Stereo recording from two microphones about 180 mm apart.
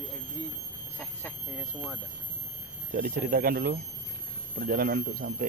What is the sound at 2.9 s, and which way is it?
Speech, 50° right (ahead or behind).